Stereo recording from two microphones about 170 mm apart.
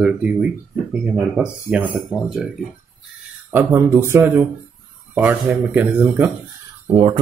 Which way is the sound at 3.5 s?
15° right (ahead or behind).